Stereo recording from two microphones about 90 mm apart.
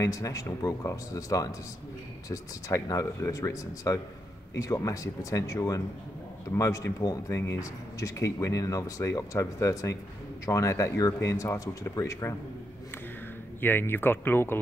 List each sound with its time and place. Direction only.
0.0 s speech: 35° left (ahead or behind)
13.6 s speech: 25° left (ahead or behind)